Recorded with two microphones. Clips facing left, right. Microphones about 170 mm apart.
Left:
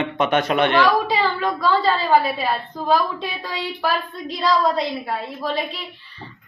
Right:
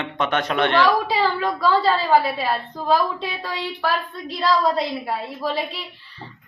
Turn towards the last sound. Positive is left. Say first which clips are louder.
# even
turn(degrees=-5)  # may be behind; listen again after turning